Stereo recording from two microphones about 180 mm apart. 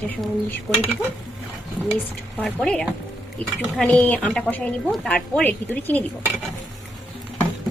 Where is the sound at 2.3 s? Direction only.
5° left (ahead or behind).